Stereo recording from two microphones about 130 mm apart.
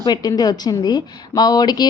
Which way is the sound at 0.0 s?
30° left (ahead or behind).